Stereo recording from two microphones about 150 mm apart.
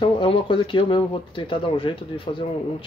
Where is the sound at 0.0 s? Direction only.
35° left (ahead or behind).